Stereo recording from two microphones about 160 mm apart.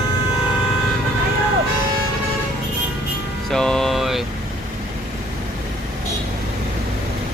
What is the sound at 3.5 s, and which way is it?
Music, 5° left (ahead or behind).